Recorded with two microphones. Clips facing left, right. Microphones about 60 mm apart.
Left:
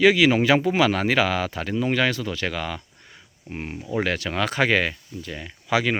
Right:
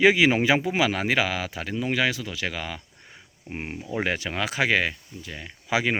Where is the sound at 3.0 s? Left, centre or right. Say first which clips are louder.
Even; centre.